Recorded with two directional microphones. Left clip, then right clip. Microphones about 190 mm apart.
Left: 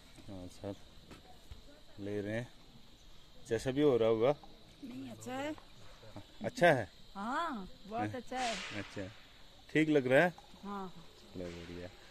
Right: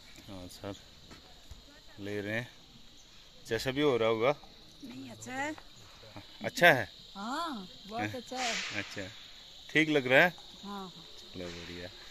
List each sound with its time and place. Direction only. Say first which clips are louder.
0.3 s a sound: right 2 dB; 5° left (ahead or behind)
2.0 s speech: right 3 dB; 5° left (ahead or behind)
5.0 s speech: right 4 dB; 60° left (ahead or behind)
6.1 s speech: right 3 dB; 10° left (ahead or behind)